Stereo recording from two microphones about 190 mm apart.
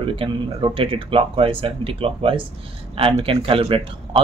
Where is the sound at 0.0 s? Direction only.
25° right (ahead or behind).